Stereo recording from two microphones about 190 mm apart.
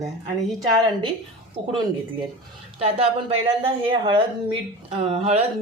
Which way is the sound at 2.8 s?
30° right (ahead or behind).